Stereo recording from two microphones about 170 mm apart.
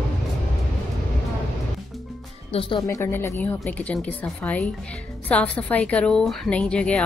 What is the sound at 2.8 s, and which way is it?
A woman's voice, 15° left (ahead or behind).